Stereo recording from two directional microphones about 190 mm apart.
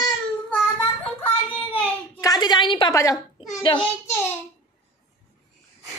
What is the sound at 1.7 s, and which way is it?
A child's voice, 15° left (ahead or behind).